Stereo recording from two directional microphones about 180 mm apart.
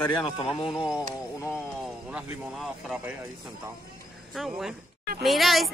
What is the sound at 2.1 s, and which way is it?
Speech, 5° right (ahead or behind).